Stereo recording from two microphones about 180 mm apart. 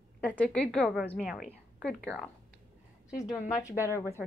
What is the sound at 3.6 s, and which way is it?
Speech, 15° left (ahead or behind).